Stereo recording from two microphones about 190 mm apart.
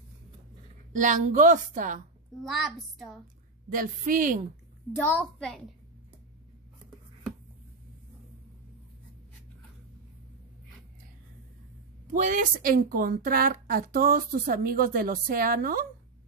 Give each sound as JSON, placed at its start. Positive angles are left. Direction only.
{"t": 0.9, "sound": "a woman's voice", "side_deg": -40}
{"t": 2.4, "sound": "a child's voice", "side_deg": 0}
{"t": 3.7, "sound": "a woman's voice", "side_deg": -45}
{"t": 4.9, "sound": "a child's voice", "side_deg": 10}
{"t": 12.1, "sound": "a woman's voice", "side_deg": -45}